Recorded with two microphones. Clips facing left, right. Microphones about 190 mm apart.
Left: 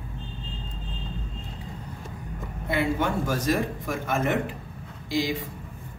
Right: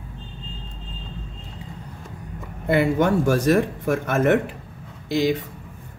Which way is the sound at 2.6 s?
60° right (ahead or behind).